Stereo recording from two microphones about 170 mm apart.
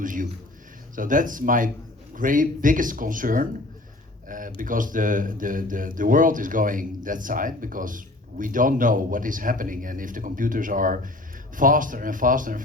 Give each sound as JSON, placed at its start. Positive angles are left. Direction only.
{"t": 0.0, "sound": "speech", "side_deg": -50}